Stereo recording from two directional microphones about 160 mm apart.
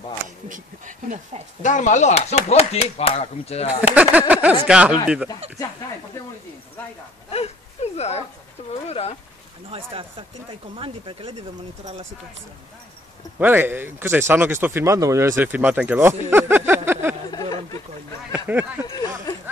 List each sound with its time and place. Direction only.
0.5 s speech: 55° right (ahead or behind)
1.6 s speech: 50° left (ahead or behind)
3.9 s speech: 10° right (ahead or behind)
7.3 s a sound: 40° left (ahead or behind)
8.8 s speech: 40° left (ahead or behind)
9.7 s speech: 35° right (ahead or behind)
13.4 s speech: 10° right (ahead or behind)
17.3 s a sound: 25° left (ahead or behind)
18.3 s speech: 10° right (ahead or behind)
18.9 s a sound: 25° left (ahead or behind)